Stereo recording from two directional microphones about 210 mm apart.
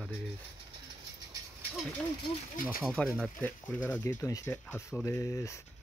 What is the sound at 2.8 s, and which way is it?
Speech, 5° left (ahead or behind).